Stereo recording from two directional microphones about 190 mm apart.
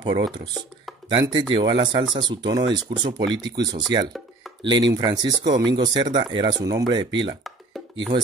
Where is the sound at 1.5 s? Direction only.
25° right (ahead or behind).